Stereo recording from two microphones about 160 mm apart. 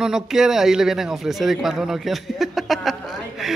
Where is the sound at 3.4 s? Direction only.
Centre (ahead or behind).